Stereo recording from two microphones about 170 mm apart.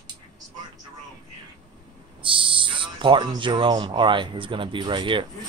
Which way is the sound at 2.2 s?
30° right (ahead or behind).